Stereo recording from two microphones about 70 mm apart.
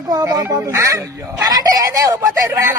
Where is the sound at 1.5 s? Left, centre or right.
Right.